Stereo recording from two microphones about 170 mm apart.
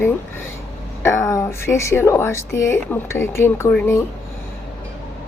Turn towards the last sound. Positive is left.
turn(degrees=15)  # may be behind; listen again after turning